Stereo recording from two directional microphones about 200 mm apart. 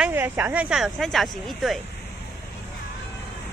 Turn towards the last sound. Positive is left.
turn(degrees=0)  # may be behind; listen again after turning